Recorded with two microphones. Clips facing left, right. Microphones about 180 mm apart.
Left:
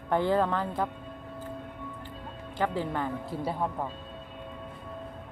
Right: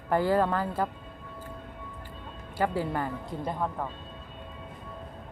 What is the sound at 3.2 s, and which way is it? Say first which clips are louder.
Speech: left 1 dB; 10° left (ahead or behind).